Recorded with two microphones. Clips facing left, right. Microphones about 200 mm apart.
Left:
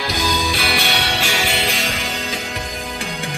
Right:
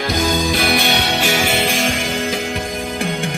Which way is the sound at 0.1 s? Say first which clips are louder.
Right 5 dB; 50° right (ahead or behind).